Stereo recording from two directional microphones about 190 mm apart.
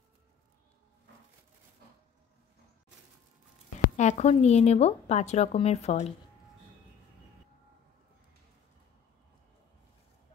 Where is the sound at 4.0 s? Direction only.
35° left (ahead or behind).